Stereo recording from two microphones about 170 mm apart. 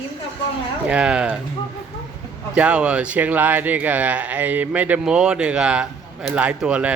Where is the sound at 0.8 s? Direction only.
5° right (ahead or behind).